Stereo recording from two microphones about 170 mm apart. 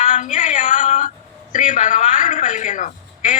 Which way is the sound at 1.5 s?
45° left (ahead or behind).